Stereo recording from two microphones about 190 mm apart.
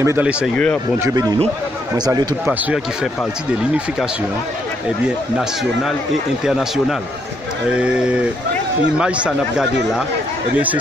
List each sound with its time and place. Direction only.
0.0 s speech: 10° right (ahead or behind)
2.4 s speech: 5° right (ahead or behind)
6.4 s speech: 5° right (ahead or behind)